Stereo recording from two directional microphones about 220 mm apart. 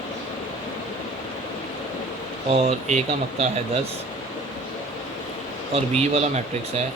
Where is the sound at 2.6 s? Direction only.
30° right (ahead or behind).